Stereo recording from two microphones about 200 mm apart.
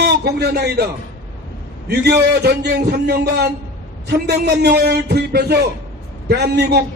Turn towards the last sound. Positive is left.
turn(degrees=-55)  # may be behind; listen again after turning